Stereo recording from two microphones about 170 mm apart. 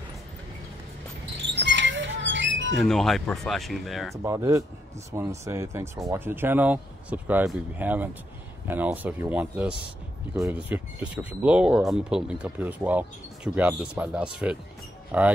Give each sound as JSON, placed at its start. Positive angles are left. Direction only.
{"t": 1.4, "sound": "a sound", "side_deg": -90}
{"t": 2.8, "sound": "speech", "side_deg": 0}
{"t": 4.2, "sound": "speech", "side_deg": -20}